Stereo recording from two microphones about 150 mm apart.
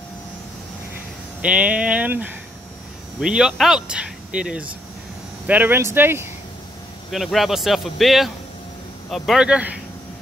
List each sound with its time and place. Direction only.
1.4 s speech: 10° right (ahead or behind)
7.1 s speech: centre (ahead or behind)